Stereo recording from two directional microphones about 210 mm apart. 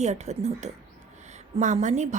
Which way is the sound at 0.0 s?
30° right (ahead or behind).